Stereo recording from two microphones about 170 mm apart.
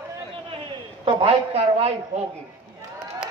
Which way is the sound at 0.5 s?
30° right (ahead or behind).